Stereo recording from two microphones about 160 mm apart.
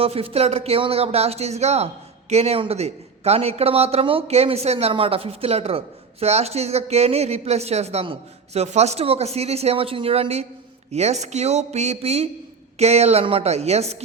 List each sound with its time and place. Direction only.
0.0 s a man's voice: 35° right (ahead or behind)